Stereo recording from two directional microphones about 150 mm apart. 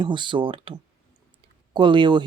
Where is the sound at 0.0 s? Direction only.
30° right (ahead or behind).